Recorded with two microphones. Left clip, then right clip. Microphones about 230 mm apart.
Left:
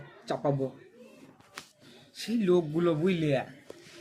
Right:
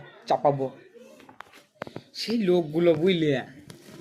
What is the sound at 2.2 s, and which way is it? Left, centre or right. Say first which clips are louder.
Speech: right 3 dB; centre.